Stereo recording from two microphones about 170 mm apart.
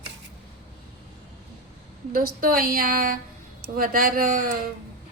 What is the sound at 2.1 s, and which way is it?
Music, 60° right (ahead or behind).